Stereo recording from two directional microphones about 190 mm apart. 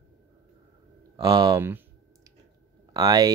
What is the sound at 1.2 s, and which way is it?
Speech, 20° right (ahead or behind).